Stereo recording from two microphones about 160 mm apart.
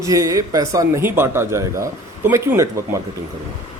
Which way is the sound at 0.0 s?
20° right (ahead or behind).